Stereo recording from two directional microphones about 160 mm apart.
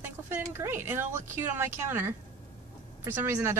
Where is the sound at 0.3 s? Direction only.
15° right (ahead or behind).